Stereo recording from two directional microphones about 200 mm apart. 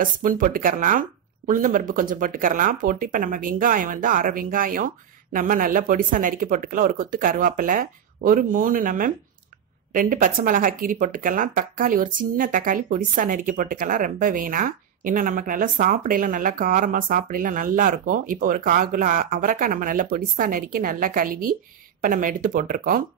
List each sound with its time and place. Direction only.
0.0 s speech: 45° right (ahead or behind)